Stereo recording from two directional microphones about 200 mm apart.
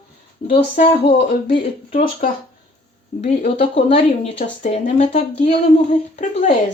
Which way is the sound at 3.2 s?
30° left (ahead or behind).